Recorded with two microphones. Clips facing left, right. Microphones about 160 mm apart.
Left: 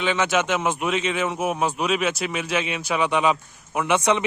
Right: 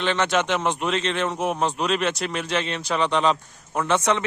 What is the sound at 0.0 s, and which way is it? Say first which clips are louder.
A man's voice: even; 5° left (ahead or behind).